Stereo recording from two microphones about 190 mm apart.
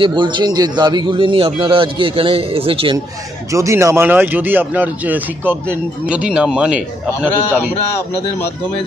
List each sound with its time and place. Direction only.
0.0 s a man's voice: 25° right (ahead or behind)
3.5 s a man's voice: 15° right (ahead or behind)